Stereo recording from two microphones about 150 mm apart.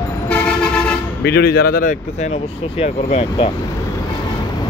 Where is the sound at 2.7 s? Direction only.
40° left (ahead or behind).